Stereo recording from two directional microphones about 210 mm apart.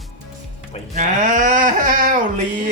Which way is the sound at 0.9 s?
35° right (ahead or behind).